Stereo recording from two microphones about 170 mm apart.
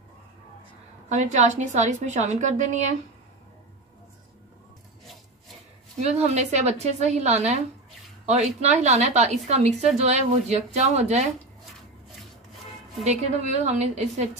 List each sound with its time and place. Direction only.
1.0 s a woman's voice: 45° right (ahead or behind)
5.9 s a woman's voice: 40° right (ahead or behind)
13.0 s a woman's voice: 40° right (ahead or behind)